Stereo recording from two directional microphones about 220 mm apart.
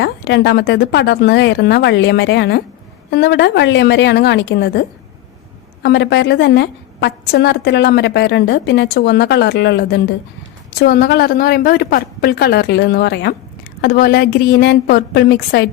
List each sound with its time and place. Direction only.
0.0 s a woman's voice: 50° left (ahead or behind)
5.8 s a woman's voice: 50° left (ahead or behind)